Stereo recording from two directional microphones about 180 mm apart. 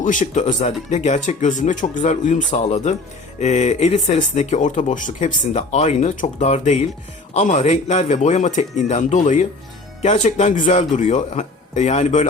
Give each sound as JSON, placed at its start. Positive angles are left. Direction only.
{"t": 0.0, "sound": "speech", "side_deg": 45}